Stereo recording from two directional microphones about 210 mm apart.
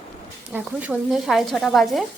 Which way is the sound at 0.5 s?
5° right (ahead or behind).